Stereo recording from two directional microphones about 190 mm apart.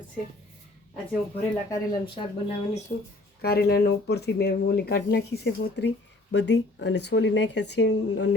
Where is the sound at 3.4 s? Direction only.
55° left (ahead or behind).